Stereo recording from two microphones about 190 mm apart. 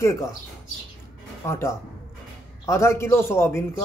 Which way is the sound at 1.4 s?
15° left (ahead or behind).